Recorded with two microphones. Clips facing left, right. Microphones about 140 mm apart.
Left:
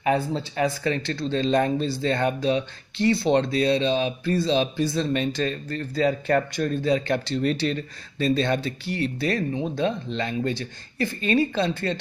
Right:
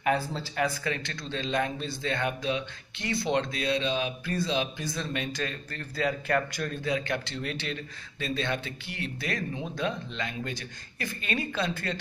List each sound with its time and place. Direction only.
0.0 s speech: 20° left (ahead or behind)